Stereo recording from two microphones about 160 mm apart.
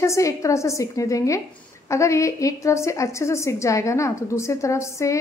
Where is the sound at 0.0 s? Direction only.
20° left (ahead or behind).